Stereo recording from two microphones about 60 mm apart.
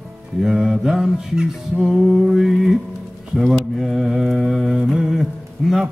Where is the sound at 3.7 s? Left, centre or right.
Centre.